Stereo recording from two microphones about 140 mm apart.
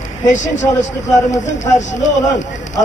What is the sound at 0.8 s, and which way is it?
A man's voice, 60° left (ahead or behind).